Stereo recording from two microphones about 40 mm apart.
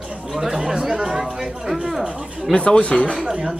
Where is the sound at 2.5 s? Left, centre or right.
Centre.